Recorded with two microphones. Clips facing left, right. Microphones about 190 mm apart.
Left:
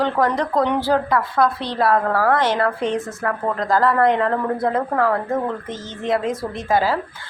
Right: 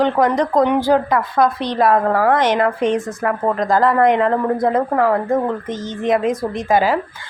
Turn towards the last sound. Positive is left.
turn(degrees=-15)  # may be behind; listen again after turning